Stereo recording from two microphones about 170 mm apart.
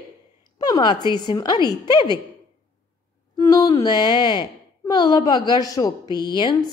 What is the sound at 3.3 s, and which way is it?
Speech, 20° left (ahead or behind).